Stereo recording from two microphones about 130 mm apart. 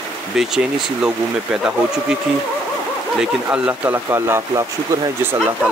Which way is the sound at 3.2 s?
10° right (ahead or behind).